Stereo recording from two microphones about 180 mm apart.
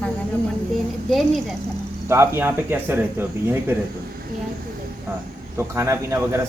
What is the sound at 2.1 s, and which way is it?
Speech, 15° right (ahead or behind).